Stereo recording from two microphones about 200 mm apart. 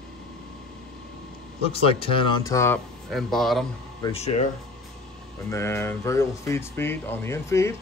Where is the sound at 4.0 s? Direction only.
30° left (ahead or behind).